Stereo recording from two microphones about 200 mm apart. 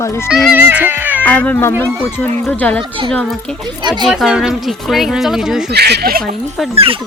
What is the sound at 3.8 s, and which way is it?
Speech, 20° right (ahead or behind).